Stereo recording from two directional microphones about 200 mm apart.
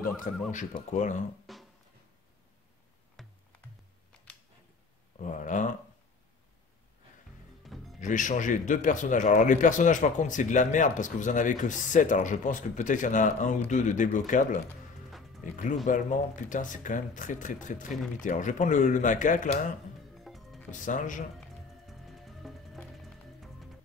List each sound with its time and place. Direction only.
0.2 s speech: 40° left (ahead or behind)
1.5 s music: centre (ahead or behind)
3.2 s music: centre (ahead or behind)
5.2 s speech: 40° left (ahead or behind)
7.6 s music: centre (ahead or behind)
8.0 s speech: 40° left (ahead or behind)
20.2 s music: centre (ahead or behind)
20.8 s speech: 40° left (ahead or behind)
21.4 s music: centre (ahead or behind)